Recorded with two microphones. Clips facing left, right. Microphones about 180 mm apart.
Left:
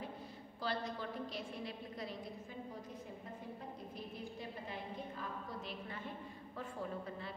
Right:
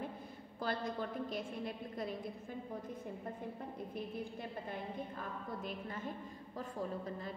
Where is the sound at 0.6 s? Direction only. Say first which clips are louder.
Right 2 dB; 50° right (ahead or behind).